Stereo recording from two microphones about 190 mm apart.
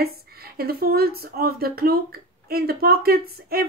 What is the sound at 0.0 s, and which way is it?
A woman's voice, 55° right (ahead or behind).